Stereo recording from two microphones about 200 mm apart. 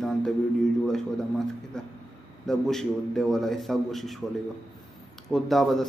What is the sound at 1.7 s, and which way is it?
A man's voice, 5° left (ahead or behind).